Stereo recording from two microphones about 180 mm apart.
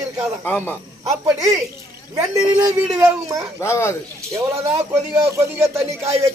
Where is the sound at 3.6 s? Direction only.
15° left (ahead or behind).